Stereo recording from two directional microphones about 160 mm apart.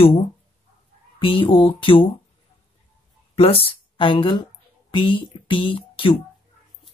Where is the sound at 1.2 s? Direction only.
35° left (ahead or behind).